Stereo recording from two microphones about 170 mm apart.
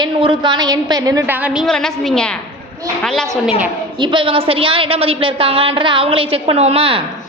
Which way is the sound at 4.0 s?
30° right (ahead or behind).